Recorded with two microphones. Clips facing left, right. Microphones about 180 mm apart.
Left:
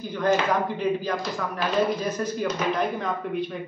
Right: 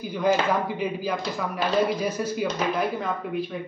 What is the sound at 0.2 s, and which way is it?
Speech, 10° right (ahead or behind).